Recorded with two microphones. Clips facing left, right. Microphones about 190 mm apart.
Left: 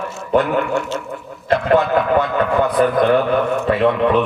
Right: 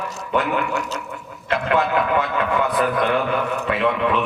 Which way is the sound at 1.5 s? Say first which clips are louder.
Left 5 dB; 40° left (ahead or behind).